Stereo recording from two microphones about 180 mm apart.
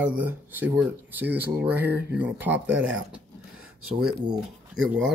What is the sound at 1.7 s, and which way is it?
Speech, 65° right (ahead or behind).